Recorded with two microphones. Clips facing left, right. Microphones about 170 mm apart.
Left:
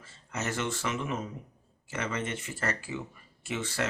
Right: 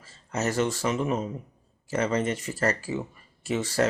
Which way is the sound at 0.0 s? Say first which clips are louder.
Right 7 dB; 40° right (ahead or behind).